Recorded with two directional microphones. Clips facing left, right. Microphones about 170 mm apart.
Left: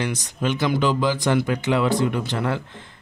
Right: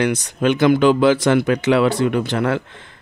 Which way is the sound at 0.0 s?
65° right (ahead or behind).